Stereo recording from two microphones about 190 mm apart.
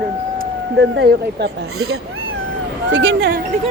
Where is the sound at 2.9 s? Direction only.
70° right (ahead or behind).